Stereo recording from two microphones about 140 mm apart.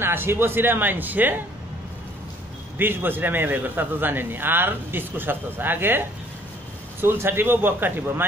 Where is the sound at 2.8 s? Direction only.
15° right (ahead or behind).